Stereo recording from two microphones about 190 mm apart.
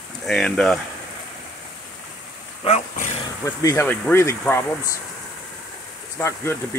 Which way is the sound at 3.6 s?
15° left (ahead or behind).